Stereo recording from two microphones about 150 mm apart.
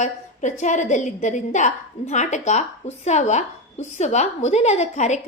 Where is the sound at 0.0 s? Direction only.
55° left (ahead or behind).